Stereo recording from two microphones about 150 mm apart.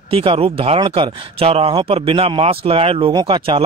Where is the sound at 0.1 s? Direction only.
35° right (ahead or behind).